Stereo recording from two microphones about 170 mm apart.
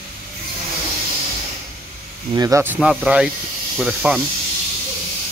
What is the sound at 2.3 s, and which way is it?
Speech, 20° right (ahead or behind).